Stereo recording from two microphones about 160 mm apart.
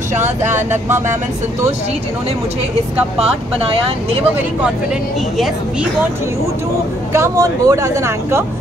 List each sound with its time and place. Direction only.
7.1 s speech: 20° right (ahead or behind)